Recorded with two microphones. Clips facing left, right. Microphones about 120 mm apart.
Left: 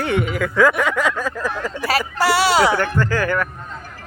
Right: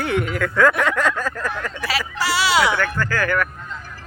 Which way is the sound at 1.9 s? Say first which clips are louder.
Left 6 dB; 50° left (ahead or behind).